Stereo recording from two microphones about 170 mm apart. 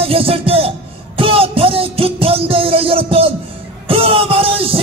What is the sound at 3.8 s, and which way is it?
Music, 30° right (ahead or behind).